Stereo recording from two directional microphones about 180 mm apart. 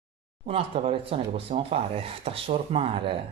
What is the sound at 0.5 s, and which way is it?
Speech, 30° right (ahead or behind).